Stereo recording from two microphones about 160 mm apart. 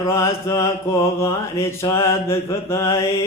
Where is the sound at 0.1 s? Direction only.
15° left (ahead or behind).